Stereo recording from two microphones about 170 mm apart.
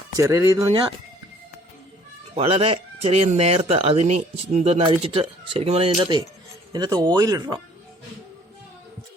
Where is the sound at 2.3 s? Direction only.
35° right (ahead or behind).